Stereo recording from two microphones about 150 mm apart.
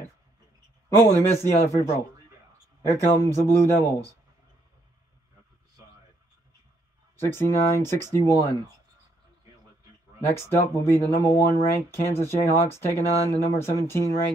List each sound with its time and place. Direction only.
0.8 s speech: 20° left (ahead or behind)
7.2 s speech: 20° left (ahead or behind)
10.3 s speech: 15° left (ahead or behind)